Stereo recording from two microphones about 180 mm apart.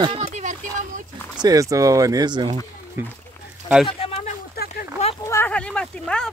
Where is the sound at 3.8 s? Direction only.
35° left (ahead or behind).